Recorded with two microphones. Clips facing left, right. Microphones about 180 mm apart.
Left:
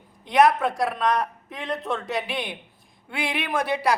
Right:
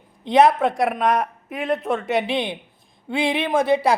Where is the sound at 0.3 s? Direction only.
25° right (ahead or behind).